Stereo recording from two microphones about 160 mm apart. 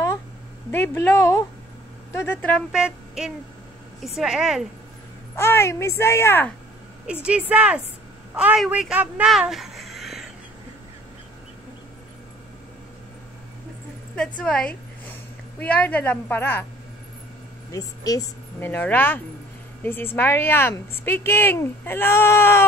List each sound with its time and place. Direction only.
0.7 s a woman's voice: 15° left (ahead or behind)
2.7 s speech: 5° right (ahead or behind)
5.3 s a woman's voice: 15° left (ahead or behind)
7.2 s speech: 10° right (ahead or behind)
14.1 s a woman's voice: 5° left (ahead or behind)
17.7 s a woman's voice: 20° left (ahead or behind)